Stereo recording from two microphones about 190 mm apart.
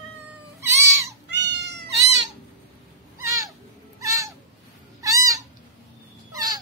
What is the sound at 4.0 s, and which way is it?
Cat, 15° right (ahead or behind).